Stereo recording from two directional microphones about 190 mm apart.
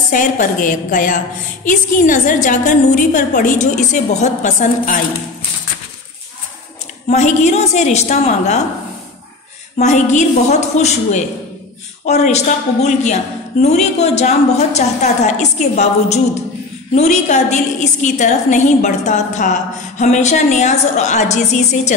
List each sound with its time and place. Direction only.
0.1 s a woman's voice: 45° left (ahead or behind)
7.1 s a woman's voice: 35° left (ahead or behind)
9.8 s a woman's voice: 40° left (ahead or behind)